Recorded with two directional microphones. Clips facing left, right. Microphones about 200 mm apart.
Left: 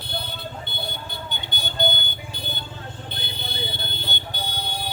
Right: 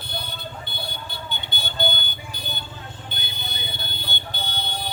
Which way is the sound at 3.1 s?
30° left (ahead or behind).